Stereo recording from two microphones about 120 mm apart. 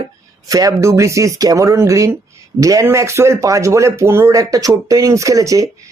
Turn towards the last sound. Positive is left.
turn(degrees=-30)  # may be behind; listen again after turning